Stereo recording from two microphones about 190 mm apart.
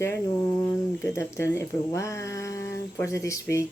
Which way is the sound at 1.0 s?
15° left (ahead or behind).